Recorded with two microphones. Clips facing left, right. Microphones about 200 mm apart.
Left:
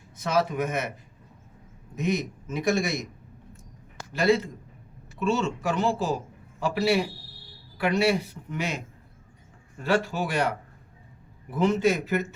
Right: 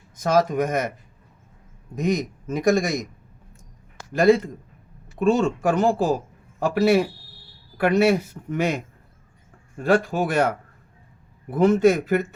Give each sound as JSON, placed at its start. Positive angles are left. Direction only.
{"t": 0.2, "sound": "speech", "side_deg": -45}
{"t": 2.0, "sound": "speech", "side_deg": -45}
{"t": 4.1, "sound": "speech", "side_deg": -50}
{"t": 11.5, "sound": "speech", "side_deg": -50}